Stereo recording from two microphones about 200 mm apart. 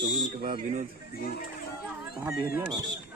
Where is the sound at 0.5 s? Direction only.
35° right (ahead or behind).